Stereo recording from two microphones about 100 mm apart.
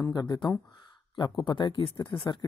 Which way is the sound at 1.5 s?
55° left (ahead or behind).